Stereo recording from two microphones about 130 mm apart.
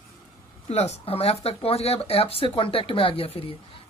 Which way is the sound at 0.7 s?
55° left (ahead or behind).